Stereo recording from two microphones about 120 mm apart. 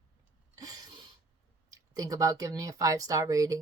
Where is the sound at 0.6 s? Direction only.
30° right (ahead or behind).